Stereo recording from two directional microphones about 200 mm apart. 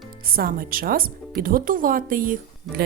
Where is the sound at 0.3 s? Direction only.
45° right (ahead or behind).